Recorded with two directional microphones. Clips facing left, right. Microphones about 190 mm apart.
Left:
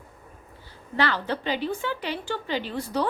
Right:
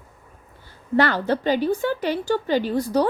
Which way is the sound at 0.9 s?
45° right (ahead or behind).